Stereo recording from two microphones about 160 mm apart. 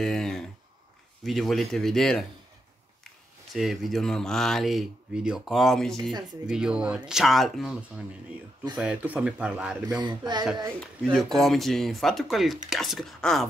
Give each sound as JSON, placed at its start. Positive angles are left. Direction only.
{"t": 0.0, "sound": "a sound", "side_deg": 5}
{"t": 1.2, "sound": "speech", "side_deg": 0}
{"t": 3.5, "sound": "speech", "side_deg": 0}
{"t": 9.9, "sound": "speech", "side_deg": -25}
{"t": 11.1, "sound": "speech", "side_deg": 0}